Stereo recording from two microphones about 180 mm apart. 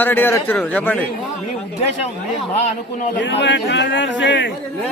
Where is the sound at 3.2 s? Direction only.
80° left.